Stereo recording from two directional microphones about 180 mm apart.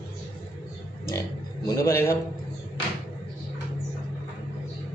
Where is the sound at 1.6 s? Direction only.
15° left (ahead or behind).